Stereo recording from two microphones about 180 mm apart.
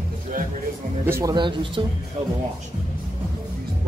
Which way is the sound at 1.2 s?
25° right (ahead or behind).